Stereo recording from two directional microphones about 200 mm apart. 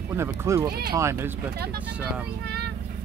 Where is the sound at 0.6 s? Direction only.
50° right (ahead or behind).